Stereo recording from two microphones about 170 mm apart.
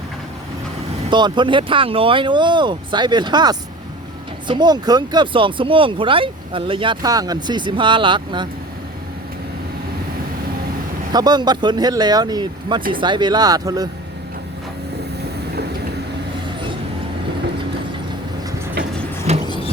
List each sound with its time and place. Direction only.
1.1 s speech: 25° right (ahead or behind)
11.1 s speech: 25° right (ahead or behind)
19.3 s vehicle: 40° right (ahead or behind)